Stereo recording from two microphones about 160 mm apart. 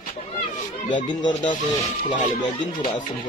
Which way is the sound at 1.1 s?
30° left (ahead or behind).